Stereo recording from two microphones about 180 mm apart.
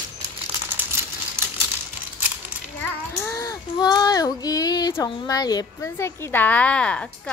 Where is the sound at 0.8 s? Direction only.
10° right (ahead or behind).